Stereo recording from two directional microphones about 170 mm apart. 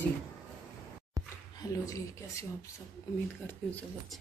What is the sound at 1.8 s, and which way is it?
Speech, 20° left (ahead or behind).